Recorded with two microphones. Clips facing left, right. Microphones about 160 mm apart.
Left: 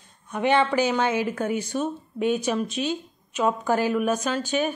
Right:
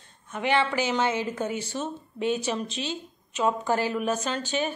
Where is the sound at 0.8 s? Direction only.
15° left (ahead or behind).